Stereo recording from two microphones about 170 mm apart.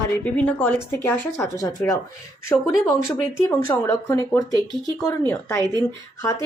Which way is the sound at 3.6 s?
15° left (ahead or behind).